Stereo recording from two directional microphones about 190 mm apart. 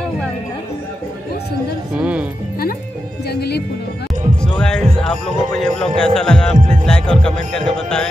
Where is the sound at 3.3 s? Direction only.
60° left (ahead or behind).